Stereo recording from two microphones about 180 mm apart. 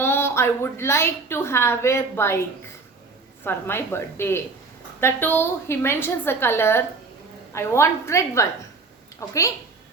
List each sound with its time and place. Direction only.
0.0 s a woman's voice: 15° left (ahead or behind)